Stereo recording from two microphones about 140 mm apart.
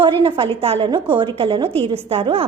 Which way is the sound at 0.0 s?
35° right (ahead or behind).